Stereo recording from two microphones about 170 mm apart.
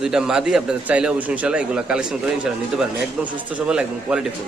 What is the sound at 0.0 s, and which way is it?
A man's voice, 5° right (ahead or behind).